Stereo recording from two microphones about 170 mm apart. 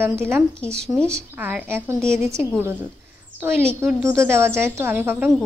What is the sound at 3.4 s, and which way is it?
A woman's voice, 15° right (ahead or behind).